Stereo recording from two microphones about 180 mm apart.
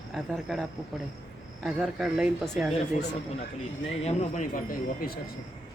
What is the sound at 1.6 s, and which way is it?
Speech, 5° right (ahead or behind).